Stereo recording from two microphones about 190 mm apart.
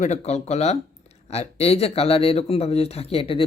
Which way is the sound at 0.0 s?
35° left (ahead or behind).